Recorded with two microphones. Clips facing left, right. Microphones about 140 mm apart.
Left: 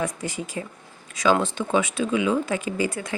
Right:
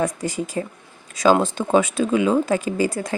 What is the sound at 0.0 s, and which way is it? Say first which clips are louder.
Speech: right 5 dB; 40° right (ahead or behind).